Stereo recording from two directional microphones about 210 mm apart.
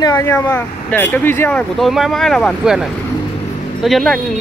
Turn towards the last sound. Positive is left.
turn(degrees=0)  # may be behind; listen again after turning